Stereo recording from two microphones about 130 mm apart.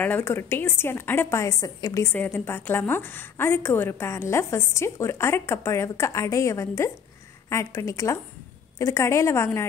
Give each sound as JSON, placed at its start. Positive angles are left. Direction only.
{"t": 0.0, "sound": "a woman's voice", "side_deg": 15}
{"t": 2.1, "sound": "a woman's voice", "side_deg": 15}